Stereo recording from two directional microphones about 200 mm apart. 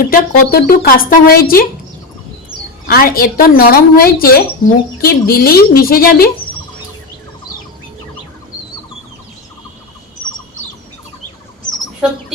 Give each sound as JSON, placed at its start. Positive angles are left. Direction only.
{"t": 0.0, "sound": "a woman's voice", "side_deg": 45}